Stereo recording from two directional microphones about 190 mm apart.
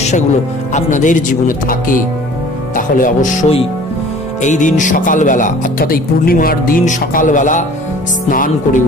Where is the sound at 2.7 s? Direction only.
45° left (ahead or behind).